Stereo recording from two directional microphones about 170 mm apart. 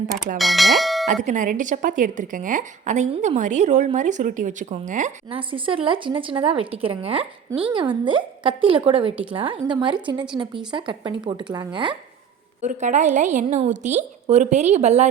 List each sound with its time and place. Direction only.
0.3 s speech: centre (ahead or behind)
1.0 s speech: 45° right (ahead or behind)
5.3 s speech: 30° right (ahead or behind)
12.6 s speech: 45° right (ahead or behind)